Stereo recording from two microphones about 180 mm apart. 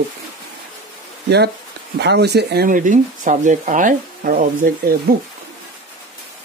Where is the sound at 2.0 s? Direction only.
70° right (ahead or behind); by 4.9 s 50° right (ahead or behind).